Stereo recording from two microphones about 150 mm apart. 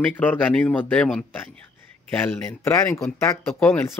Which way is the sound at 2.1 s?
20° left (ahead or behind).